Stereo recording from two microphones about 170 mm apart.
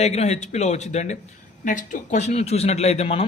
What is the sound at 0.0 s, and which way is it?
A man's voice, 40° left (ahead or behind).